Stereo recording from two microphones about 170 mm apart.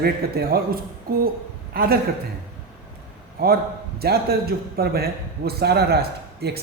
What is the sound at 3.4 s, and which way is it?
A man's voice, 65° right (ahead or behind).